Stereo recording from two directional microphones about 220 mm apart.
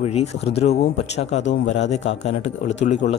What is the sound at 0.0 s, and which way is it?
Speech, 30° left (ahead or behind).